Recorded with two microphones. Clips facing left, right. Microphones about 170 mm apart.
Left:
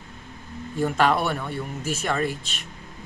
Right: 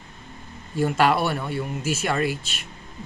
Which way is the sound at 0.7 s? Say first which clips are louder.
Right 1 dB; 5° right (ahead or behind).